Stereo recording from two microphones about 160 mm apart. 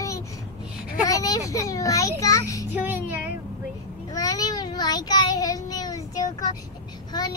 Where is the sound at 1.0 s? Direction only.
20° left (ahead or behind).